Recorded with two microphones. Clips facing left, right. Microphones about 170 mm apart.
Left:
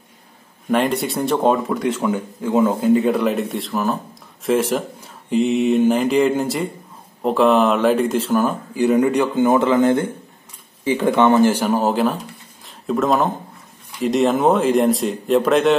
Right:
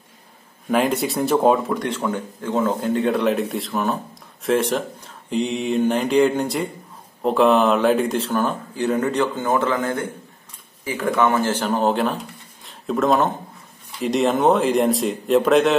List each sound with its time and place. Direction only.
0.7 s speech: centre (ahead or behind); by 11.5 s 20° left (ahead or behind)
11.5 s speech: 10° left (ahead or behind)